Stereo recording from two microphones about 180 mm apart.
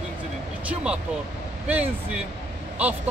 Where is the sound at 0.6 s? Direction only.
5° right (ahead or behind).